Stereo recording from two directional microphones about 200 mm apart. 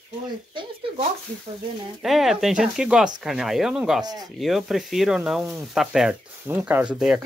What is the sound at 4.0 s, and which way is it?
Speech, 20° right (ahead or behind).